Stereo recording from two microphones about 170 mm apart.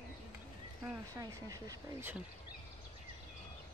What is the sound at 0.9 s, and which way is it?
Speech, 20° right (ahead or behind).